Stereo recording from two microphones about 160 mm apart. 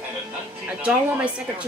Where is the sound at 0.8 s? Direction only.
10° right (ahead or behind).